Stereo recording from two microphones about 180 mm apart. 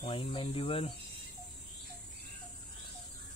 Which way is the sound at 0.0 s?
30° left (ahead or behind).